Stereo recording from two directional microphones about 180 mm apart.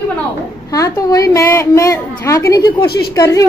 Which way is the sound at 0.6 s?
20° left (ahead or behind).